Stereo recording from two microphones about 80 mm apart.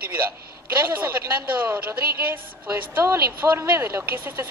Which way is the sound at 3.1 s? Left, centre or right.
Right.